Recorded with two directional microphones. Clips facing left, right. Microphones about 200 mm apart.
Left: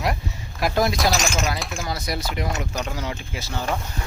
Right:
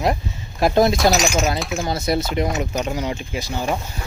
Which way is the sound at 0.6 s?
25° right (ahead or behind).